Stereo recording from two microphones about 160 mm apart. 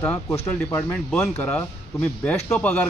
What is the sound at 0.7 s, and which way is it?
Speech, 5° left (ahead or behind).